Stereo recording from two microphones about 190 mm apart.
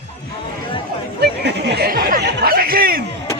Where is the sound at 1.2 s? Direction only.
60° right (ahead or behind).